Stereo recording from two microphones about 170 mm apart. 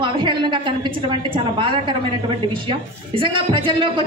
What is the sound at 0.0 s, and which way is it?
A woman's voice, 30° right (ahead or behind).